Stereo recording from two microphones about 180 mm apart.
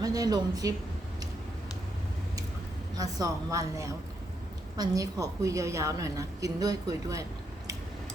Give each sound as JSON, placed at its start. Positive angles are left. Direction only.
{"t": 0.0, "sound": "a woman's voice", "side_deg": -20}
{"t": 3.0, "sound": "a woman's voice", "side_deg": -20}